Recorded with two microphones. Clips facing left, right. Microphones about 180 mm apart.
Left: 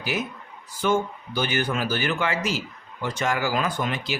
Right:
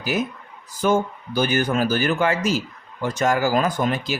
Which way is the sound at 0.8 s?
45° right (ahead or behind).